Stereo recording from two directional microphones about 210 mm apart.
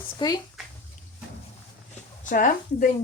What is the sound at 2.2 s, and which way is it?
Speech, 40° left (ahead or behind).